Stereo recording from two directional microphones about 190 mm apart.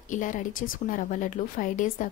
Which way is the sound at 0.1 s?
40° left (ahead or behind).